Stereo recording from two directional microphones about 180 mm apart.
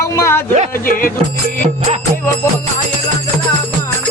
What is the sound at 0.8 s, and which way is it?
Music, 50° left (ahead or behind).